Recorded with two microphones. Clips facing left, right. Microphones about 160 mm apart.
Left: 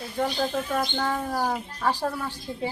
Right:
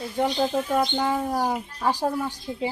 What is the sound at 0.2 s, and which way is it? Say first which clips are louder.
Speech: right 3 dB; 15° right (ahead or behind).